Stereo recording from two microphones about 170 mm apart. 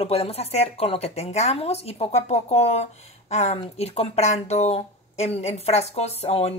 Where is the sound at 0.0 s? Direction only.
35° left (ahead or behind).